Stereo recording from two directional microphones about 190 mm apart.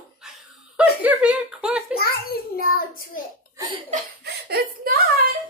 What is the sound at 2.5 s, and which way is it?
Child singing, 50° left (ahead or behind).